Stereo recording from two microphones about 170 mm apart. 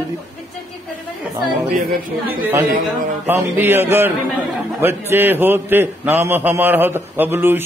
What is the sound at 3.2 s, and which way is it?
A man's voice, 10° right (ahead or behind).